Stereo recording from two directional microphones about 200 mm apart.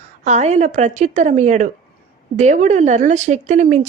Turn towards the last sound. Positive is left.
turn(degrees=-35)  # may be behind; listen again after turning